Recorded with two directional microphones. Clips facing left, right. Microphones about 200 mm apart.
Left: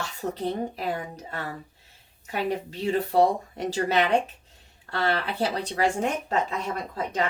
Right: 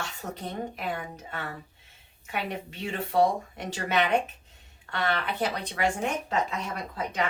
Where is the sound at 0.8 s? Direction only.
35° left (ahead or behind).